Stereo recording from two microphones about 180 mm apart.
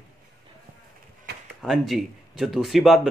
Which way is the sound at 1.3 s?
65° right (ahead or behind).